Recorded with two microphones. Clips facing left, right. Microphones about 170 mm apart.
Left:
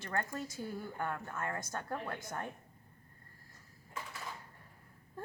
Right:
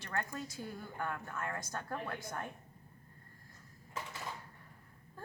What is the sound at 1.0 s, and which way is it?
Speech, 25° left (ahead or behind).